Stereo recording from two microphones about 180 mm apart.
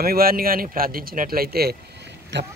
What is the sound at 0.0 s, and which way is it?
Speech, 55° right (ahead or behind).